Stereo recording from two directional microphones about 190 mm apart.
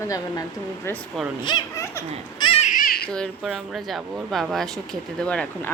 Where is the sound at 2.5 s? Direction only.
35° left (ahead or behind).